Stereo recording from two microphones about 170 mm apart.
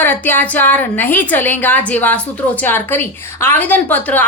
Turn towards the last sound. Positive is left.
turn(degrees=10)  # may be behind; listen again after turning